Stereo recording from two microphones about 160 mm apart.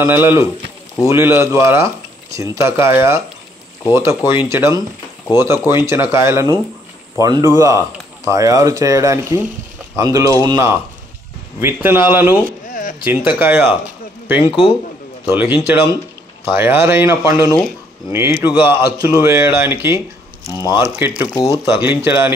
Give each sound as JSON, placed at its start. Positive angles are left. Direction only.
{"t": 0.0, "sound": "a man's voice", "side_deg": -15}
{"t": 18.6, "sound": "speech", "side_deg": -20}
{"t": 20.5, "sound": "speech", "side_deg": 25}
{"t": 21.6, "sound": "speech", "side_deg": -15}